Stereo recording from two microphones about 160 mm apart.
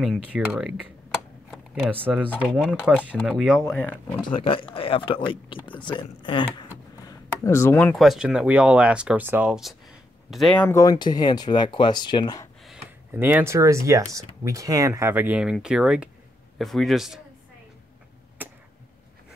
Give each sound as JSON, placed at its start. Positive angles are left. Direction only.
{"t": 0.0, "sound": "speech", "side_deg": -5}
{"t": 2.4, "sound": "speech", "side_deg": -5}
{"t": 3.7, "sound": "speech", "side_deg": 10}
{"t": 4.2, "sound": "speech", "side_deg": 30}
{"t": 7.9, "sound": "speech", "side_deg": 0}
{"t": 10.8, "sound": "speech", "side_deg": 25}
{"t": 13.1, "sound": "speech", "side_deg": -15}
{"t": 18.4, "sound": "a sound", "side_deg": -10}